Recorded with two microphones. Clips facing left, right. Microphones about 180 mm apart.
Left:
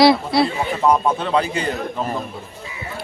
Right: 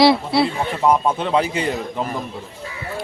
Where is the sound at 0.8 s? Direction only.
10° right (ahead or behind).